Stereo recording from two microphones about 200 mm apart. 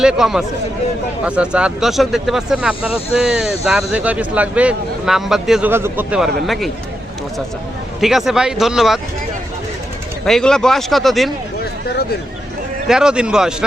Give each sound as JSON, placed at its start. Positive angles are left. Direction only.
{"t": 0.0, "sound": "speech", "side_deg": -5}
{"t": 8.0, "sound": "speech", "side_deg": 0}
{"t": 10.2, "sound": "speech", "side_deg": 0}
{"t": 11.6, "sound": "a sound", "side_deg": 50}
{"t": 12.9, "sound": "speech", "side_deg": -5}